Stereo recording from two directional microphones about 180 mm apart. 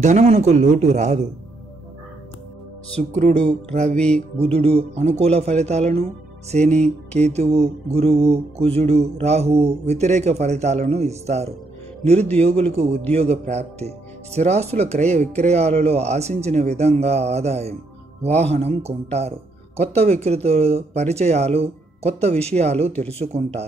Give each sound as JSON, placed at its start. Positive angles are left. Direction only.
{"t": 0.0, "sound": "speech", "side_deg": -40}
{"t": 3.0, "sound": "speech", "side_deg": -40}
{"t": 3.9, "sound": "music", "side_deg": 5}
{"t": 4.4, "sound": "speech", "side_deg": -35}
{"t": 6.7, "sound": "music", "side_deg": 5}
{"t": 7.2, "sound": "speech", "side_deg": -35}